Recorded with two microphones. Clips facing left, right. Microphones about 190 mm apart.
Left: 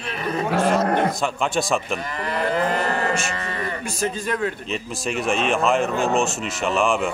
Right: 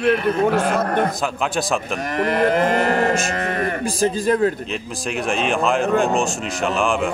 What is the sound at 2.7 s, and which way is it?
Cattle, 50° right (ahead or behind).